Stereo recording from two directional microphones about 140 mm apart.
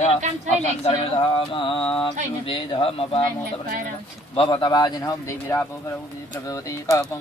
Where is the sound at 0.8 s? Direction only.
40° left (ahead or behind).